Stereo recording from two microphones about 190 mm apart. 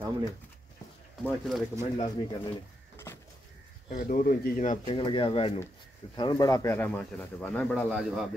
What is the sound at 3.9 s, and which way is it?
Speech, 45° left (ahead or behind).